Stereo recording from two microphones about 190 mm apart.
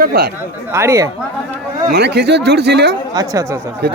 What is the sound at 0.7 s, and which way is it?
Speech, 15° right (ahead or behind).